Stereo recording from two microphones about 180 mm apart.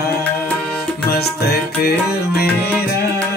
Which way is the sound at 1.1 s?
60° left (ahead or behind).